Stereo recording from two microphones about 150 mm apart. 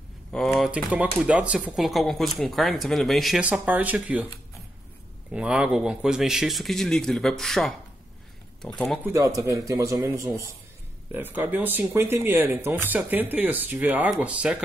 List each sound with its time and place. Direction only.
0.6 s speech: 5° right (ahead or behind)
3.4 s speech: 10° right (ahead or behind)
5.3 s speech: 5° right (ahead or behind)
8.7 s speech: centre (ahead or behind)
9.0 s speech: 20° right (ahead or behind)